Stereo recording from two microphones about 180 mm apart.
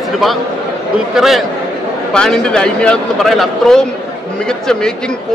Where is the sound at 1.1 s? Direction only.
Centre (ahead or behind).